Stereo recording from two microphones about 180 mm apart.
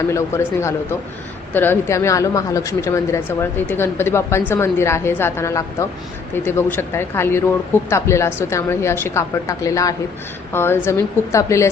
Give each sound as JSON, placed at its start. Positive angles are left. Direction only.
{"t": 0.1, "sound": "speech", "side_deg": 15}